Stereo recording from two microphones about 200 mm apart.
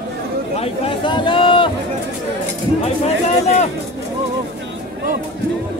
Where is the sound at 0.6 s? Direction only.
25° left (ahead or behind).